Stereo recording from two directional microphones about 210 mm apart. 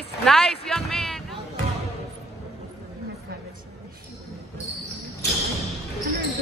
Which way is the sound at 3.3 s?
45° right (ahead or behind).